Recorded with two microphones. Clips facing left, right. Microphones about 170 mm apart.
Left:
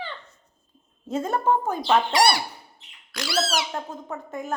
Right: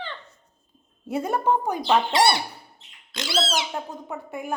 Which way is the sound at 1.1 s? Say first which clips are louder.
Even; 15° right (ahead or behind).